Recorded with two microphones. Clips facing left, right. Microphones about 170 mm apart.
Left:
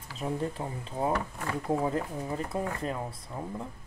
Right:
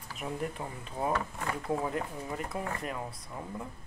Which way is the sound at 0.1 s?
30° left (ahead or behind).